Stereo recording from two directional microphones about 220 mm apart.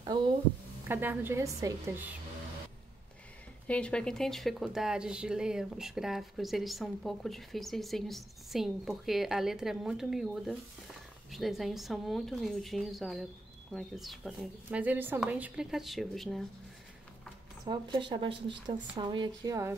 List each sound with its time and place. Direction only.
0.0 s speech: 20° right (ahead or behind)
0.8 s a woman's voice: 10° right (ahead or behind)
3.6 s a woman's voice: 5° left (ahead or behind)
17.6 s speech: 20° right (ahead or behind)